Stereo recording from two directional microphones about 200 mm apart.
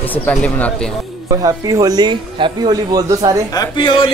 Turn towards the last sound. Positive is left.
turn(degrees=25)  # may be behind; listen again after turning